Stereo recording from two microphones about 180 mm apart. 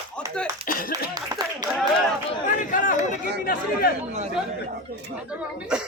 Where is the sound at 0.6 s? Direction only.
50° left (ahead or behind).